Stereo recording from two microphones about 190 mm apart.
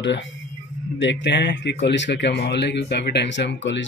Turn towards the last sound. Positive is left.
turn(degrees=70)  # may be behind; listen again after turning